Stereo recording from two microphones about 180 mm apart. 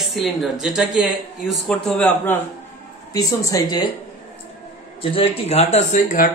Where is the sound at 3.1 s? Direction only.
20° left (ahead or behind).